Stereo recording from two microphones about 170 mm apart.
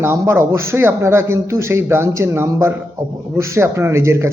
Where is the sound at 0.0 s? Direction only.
15° right (ahead or behind).